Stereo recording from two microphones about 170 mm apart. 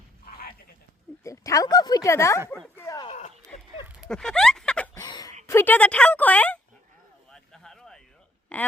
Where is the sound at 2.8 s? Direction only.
20° left (ahead or behind).